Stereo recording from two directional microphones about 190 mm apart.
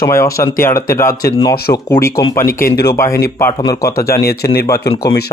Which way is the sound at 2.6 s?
55° left (ahead or behind).